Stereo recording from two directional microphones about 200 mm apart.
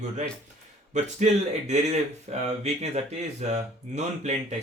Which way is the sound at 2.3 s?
30° right (ahead or behind).